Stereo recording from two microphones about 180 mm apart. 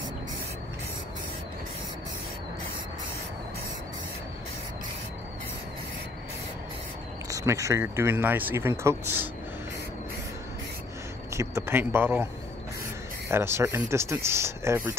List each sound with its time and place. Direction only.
7.2 s speech: 15° right (ahead or behind)
11.3 s speech: 15° right (ahead or behind)
13.3 s speech: 15° right (ahead or behind)